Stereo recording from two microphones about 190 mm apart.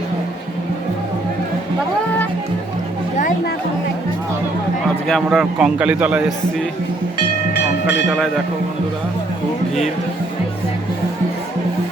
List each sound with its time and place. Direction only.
3.2 s music: 45° left (ahead or behind)
5.0 s a man's voice: centre (ahead or behind)